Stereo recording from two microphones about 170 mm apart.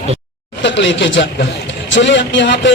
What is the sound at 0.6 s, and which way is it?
Speech, 90° left.